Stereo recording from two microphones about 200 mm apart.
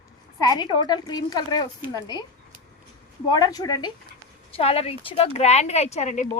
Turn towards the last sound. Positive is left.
turn(degrees=35)  # may be behind; listen again after turning